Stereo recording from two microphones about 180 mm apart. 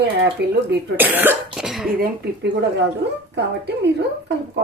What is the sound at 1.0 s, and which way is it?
Cough, 10° right (ahead or behind).